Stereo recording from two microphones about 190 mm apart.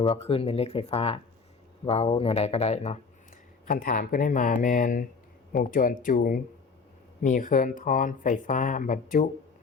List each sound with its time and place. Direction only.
0.0 s speech: 30° left (ahead or behind)
3.7 s speech: 45° left (ahead or behind)